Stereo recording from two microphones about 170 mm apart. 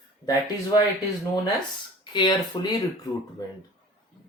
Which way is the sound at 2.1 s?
25° left (ahead or behind).